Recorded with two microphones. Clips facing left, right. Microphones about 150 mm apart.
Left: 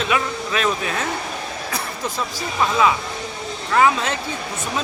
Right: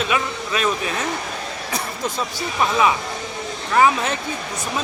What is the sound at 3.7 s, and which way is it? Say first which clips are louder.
Speech: even; 20° right (ahead or behind).